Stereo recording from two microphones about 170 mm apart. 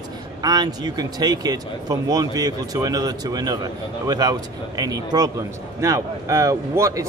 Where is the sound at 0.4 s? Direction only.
25° right (ahead or behind).